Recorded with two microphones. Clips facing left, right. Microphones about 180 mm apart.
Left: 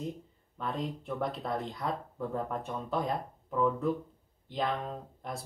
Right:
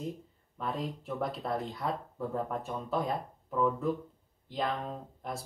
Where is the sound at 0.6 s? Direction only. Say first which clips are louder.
Even; centre (ahead or behind).